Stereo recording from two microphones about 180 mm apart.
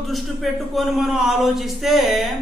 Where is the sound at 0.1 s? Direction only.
Centre (ahead or behind).